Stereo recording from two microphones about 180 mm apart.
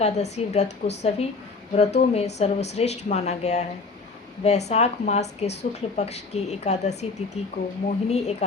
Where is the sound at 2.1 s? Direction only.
35° left (ahead or behind).